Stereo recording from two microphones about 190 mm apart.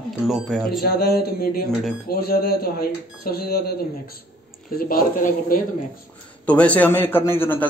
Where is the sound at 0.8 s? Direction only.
55° left (ahead or behind).